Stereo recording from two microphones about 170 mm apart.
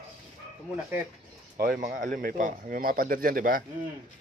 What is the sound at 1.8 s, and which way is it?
Speech, 50° right (ahead or behind).